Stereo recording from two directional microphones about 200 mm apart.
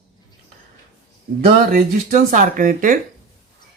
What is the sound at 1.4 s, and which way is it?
Speech, 45° right (ahead or behind).